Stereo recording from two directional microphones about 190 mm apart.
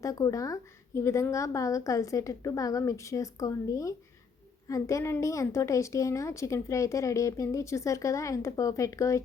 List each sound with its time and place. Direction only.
0.0 s a woman's voice: 15° left (ahead or behind)